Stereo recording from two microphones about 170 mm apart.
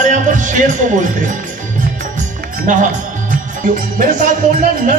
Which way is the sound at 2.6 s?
50° right (ahead or behind).